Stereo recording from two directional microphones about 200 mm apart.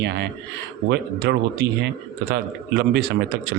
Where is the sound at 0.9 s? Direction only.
60° right (ahead or behind).